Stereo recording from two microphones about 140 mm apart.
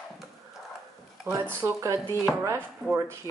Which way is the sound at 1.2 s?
10° right (ahead or behind).